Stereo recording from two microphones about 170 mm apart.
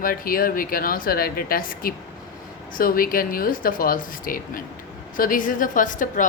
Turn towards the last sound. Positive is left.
turn(degrees=50)  # may be behind; listen again after turning